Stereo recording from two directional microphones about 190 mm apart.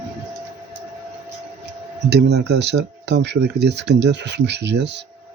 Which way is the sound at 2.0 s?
60° right (ahead or behind).